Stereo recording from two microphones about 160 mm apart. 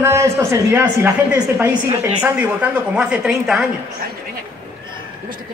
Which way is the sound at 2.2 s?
10° right (ahead or behind).